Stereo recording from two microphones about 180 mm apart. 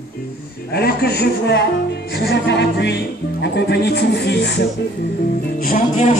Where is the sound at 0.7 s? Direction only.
60° left (ahead or behind).